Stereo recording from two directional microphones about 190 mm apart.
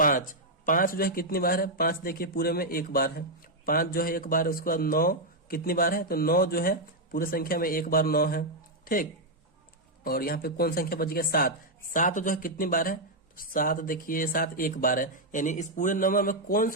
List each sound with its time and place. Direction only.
0.0 s a man's voice: 45° left (ahead or behind)